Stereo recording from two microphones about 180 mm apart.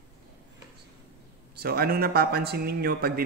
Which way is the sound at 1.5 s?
60° right (ahead or behind).